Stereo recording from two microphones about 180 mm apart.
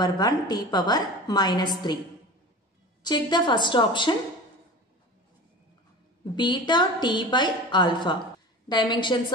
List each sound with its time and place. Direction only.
0.0 s a woman's voice: 20° left (ahead or behind)
3.0 s a woman's voice: 25° left (ahead or behind)
6.3 s a woman's voice: 25° left (ahead or behind)